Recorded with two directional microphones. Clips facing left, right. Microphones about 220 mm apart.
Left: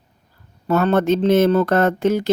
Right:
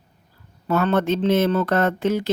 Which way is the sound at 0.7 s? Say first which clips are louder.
Left 3 dB; 45° left (ahead or behind).